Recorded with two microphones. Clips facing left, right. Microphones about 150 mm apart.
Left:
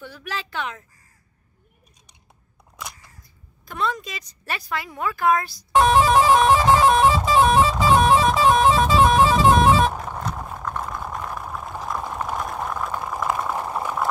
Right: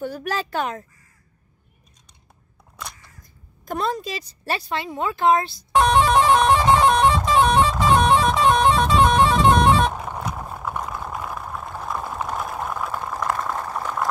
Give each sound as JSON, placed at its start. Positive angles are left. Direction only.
{"t": 0.0, "sound": "speech", "side_deg": -45}
{"t": 3.6, "sound": "speech", "side_deg": -40}
{"t": 5.7, "sound": "music", "side_deg": 0}
{"t": 9.9, "sound": "vehicle", "side_deg": -10}
{"t": 10.8, "sound": "a sound", "side_deg": -5}
{"t": 13.1, "sound": "boiling", "side_deg": 5}